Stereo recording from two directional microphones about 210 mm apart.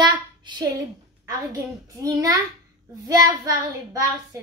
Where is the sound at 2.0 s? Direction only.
15° right (ahead or behind).